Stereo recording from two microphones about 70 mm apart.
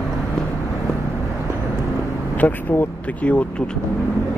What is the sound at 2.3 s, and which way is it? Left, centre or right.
Speech, left.